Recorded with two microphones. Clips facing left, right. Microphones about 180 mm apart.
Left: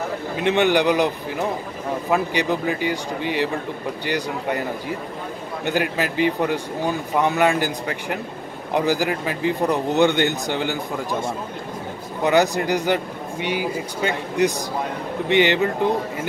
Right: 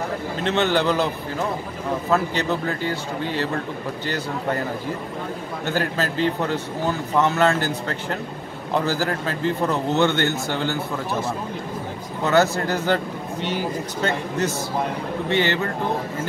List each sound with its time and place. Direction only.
0.4 s a man's voice: 15° left (ahead or behind)
5.7 s a man's voice: 15° left (ahead or behind)
12.2 s a man's voice: 15° left (ahead or behind)